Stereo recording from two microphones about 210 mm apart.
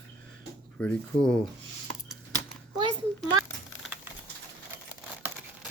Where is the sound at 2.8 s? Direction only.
20° right (ahead or behind).